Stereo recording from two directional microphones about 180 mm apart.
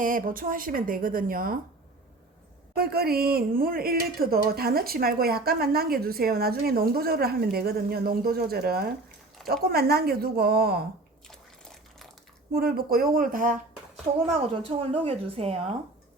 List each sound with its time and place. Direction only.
0.0 s a woman's voice: 50° right (ahead or behind)
2.7 s speech: 60° right (ahead or behind)
11.3 s a sound: centre (ahead or behind)
12.5 s a woman's voice: 60° right (ahead or behind)
14.2 s a woman's voice: 30° right (ahead or behind)